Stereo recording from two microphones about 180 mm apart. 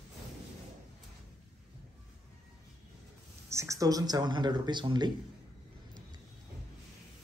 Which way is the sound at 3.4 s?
15° right (ahead or behind).